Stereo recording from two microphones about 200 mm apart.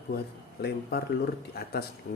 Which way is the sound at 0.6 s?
55° left (ahead or behind).